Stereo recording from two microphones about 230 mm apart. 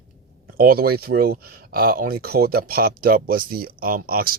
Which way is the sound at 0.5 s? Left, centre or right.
Right.